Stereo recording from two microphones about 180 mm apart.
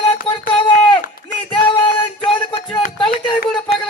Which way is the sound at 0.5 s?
25° left (ahead or behind).